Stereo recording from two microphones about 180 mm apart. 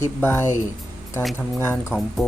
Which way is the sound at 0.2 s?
15° left (ahead or behind).